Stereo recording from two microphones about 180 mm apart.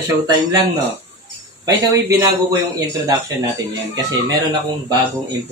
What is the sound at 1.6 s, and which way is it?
A man's voice, 20° right (ahead or behind).